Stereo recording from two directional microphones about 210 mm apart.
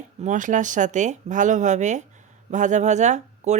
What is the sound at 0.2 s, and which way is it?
Speech, 35° right (ahead or behind).